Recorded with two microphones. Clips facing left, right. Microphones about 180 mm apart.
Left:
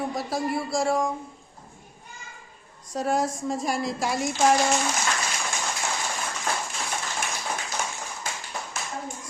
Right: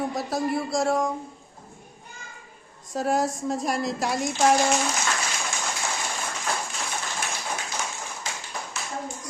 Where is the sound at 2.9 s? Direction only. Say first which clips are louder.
Right 1 dB; centre (ahead or behind).